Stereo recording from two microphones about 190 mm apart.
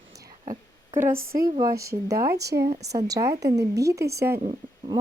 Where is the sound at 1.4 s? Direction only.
20° right (ahead or behind).